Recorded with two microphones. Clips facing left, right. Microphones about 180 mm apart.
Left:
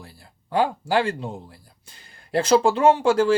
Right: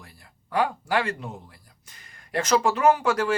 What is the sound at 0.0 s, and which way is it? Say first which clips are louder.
Speech: left 5 dB; 30° left (ahead or behind).